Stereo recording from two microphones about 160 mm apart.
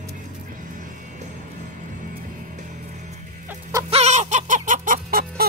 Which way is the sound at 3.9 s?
45° right (ahead or behind).